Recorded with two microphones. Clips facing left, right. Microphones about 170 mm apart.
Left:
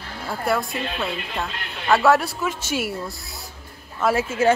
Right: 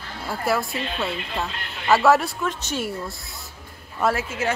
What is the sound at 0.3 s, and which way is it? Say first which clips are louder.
A woman's voice: even; centre (ahead or behind).